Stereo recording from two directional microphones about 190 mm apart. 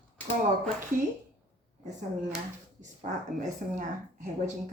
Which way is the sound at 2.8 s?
40° right (ahead or behind).